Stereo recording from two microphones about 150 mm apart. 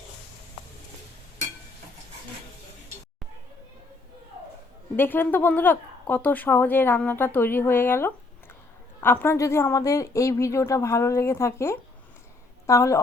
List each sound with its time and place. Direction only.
4.9 s a woman's voice: 15° left (ahead or behind)